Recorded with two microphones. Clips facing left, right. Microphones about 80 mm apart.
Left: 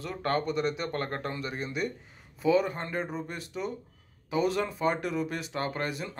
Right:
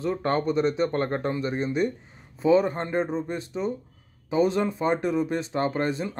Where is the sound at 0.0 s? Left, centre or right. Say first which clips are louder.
Right 5 dB; right.